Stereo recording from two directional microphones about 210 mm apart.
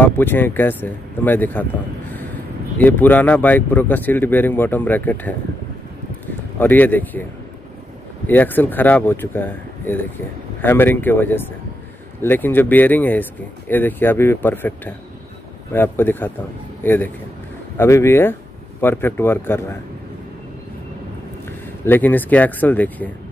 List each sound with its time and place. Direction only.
0.0 s speech: 10° left (ahead or behind)
8.3 s speech: 10° left (ahead or behind)
21.5 s speech: 10° left (ahead or behind)